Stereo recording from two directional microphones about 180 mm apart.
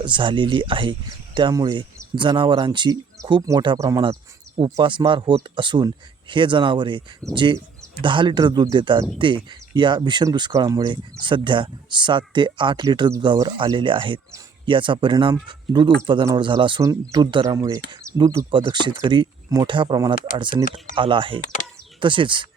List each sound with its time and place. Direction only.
0.0 s speech: 25° right (ahead or behind)